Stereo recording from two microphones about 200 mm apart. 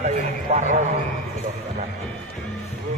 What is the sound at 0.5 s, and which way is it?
Speech, 40° right (ahead or behind).